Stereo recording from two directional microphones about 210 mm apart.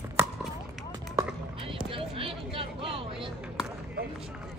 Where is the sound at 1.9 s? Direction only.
25° right (ahead or behind).